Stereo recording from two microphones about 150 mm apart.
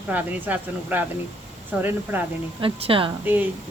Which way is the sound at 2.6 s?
35° right (ahead or behind).